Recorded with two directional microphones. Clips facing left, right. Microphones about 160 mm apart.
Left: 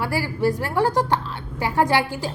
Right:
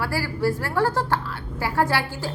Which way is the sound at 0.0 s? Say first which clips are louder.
Left 2 dB; 20° left (ahead or behind).